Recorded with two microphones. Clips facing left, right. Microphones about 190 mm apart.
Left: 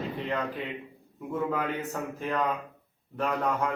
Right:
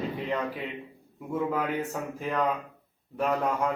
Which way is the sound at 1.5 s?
10° right (ahead or behind).